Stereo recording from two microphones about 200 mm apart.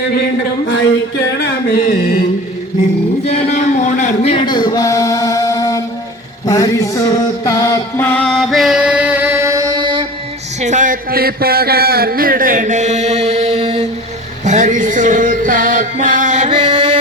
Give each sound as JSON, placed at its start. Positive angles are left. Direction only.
{"t": 1.4, "sound": "speech", "side_deg": 50}
{"t": 3.2, "sound": "speech", "side_deg": 35}
{"t": 6.5, "sound": "music", "side_deg": 15}
{"t": 10.6, "sound": "a sound", "side_deg": -40}
{"t": 14.4, "sound": "music", "side_deg": -35}
{"t": 16.5, "sound": "chant", "side_deg": -25}